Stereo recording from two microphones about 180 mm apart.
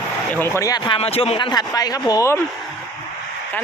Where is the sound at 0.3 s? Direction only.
15° left (ahead or behind).